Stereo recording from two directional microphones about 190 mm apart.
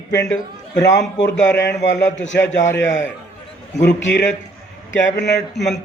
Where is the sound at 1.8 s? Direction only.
70° left (ahead or behind).